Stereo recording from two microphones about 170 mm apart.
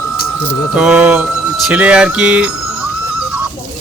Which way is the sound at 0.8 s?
5° right (ahead or behind).